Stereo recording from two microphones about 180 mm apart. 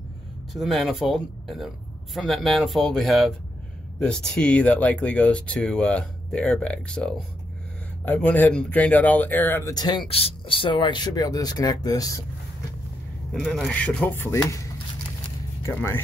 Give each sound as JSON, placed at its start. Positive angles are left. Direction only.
{"t": 0.5, "sound": "speech", "side_deg": 0}
{"t": 13.3, "sound": "speech", "side_deg": 0}